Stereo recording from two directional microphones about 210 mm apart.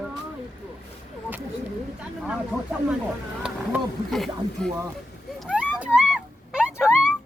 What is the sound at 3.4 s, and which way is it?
Speech, centre (ahead or behind).